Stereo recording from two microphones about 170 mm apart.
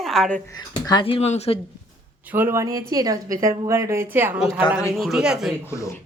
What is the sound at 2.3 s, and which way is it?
A woman's voice, 15° right (ahead or behind).